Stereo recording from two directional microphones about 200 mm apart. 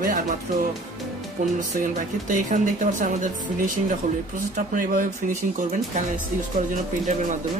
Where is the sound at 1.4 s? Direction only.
40° right (ahead or behind).